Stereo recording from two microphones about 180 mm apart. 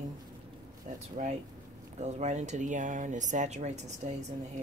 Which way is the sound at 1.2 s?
40° right (ahead or behind).